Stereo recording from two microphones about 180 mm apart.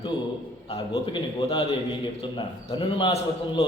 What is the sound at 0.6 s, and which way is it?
A man's voice, 30° left (ahead or behind).